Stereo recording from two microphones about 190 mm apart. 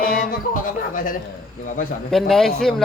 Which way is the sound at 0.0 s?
50° left (ahead or behind).